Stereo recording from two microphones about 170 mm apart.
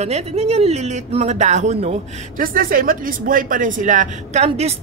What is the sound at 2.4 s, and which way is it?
Speech, 55° right (ahead or behind).